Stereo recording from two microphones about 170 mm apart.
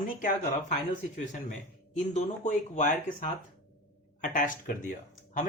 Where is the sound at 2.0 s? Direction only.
45° left (ahead or behind).